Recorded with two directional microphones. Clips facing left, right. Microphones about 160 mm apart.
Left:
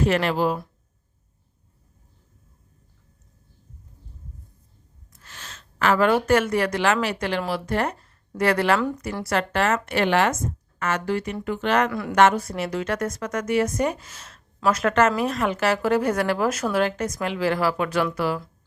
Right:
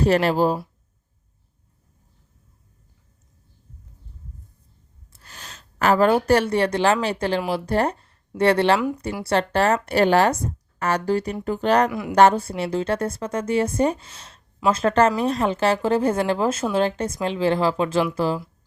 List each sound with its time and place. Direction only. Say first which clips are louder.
0.0 s speech: right 3 dB; 35° right (ahead or behind)
5.1 s a woman's voice: right 1 dB; 35° right (ahead or behind)
11.9 s speech: even; 15° right (ahead or behind)
12.1 s a woman's voice: right 3 dB; 30° right (ahead or behind)